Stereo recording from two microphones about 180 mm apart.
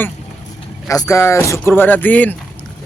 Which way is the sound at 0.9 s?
15° left (ahead or behind).